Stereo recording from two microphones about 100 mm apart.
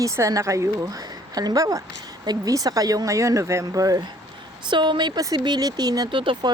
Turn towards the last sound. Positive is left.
turn(degrees=-55)  # may be behind; listen again after turning